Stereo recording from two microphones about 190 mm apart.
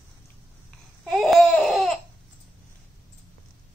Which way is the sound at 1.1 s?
Centre (ahead or behind).